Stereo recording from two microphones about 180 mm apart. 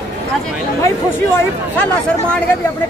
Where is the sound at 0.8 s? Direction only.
10° left (ahead or behind).